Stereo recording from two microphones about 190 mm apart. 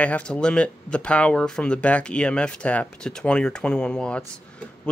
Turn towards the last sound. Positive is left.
turn(degrees=5)  # may be behind; listen again after turning